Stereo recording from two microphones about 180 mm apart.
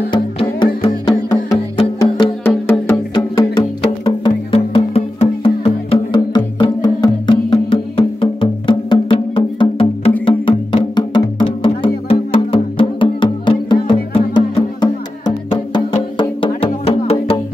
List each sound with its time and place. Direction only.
0.1 s music: 25° left (ahead or behind)
2.4 s music: 10° left (ahead or behind)
4.0 s music: 30° left (ahead or behind)